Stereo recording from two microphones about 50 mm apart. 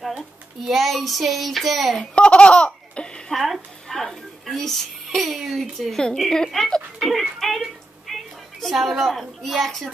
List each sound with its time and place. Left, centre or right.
0.7 s a child's voice: centre
2.1 s laughter: left
3.9 s a woman's voice: centre